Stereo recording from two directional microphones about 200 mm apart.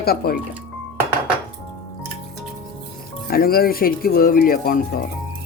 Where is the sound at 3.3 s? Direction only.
50° left (ahead or behind).